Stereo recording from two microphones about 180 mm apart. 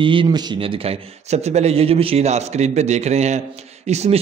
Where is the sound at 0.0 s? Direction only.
30° right (ahead or behind).